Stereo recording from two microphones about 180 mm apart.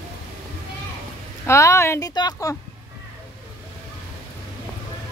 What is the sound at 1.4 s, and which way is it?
Speech, 15° left (ahead or behind).